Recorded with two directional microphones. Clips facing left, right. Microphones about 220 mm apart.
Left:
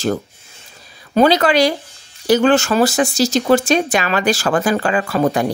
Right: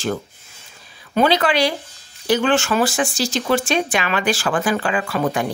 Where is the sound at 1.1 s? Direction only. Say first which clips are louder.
Left 4 dB; 40° left (ahead or behind).